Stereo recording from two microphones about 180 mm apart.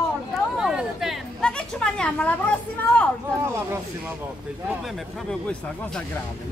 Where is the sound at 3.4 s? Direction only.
15° right (ahead or behind).